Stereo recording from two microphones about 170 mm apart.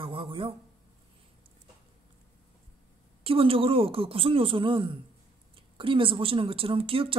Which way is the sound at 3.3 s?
35° right (ahead or behind).